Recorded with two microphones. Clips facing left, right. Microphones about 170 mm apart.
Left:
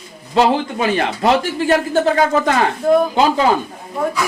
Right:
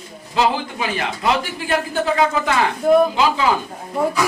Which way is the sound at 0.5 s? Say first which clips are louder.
Left 6 dB; 35° left (ahead or behind).